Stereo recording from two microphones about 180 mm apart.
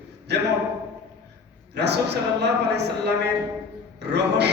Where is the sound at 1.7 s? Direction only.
70° right (ahead or behind).